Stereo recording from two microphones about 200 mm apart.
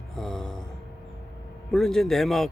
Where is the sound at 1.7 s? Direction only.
Centre (ahead or behind).